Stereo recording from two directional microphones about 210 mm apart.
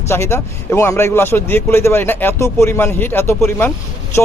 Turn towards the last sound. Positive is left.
turn(degrees=10)  # may be behind; listen again after turning